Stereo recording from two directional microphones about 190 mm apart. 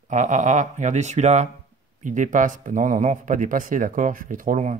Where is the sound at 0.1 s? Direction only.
40° right (ahead or behind).